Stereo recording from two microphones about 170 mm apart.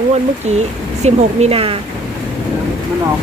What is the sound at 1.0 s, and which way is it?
Speech, 40° right (ahead or behind).